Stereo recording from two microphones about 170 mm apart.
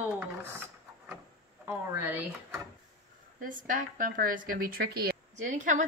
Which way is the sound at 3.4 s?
55° right (ahead or behind).